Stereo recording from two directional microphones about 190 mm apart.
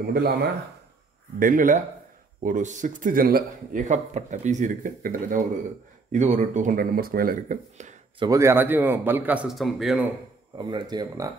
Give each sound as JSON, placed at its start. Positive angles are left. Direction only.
{"t": 0.0, "sound": "speech", "side_deg": -55}
{"t": 8.2, "sound": "a man's voice", "side_deg": -15}
{"t": 10.5, "sound": "speech", "side_deg": -20}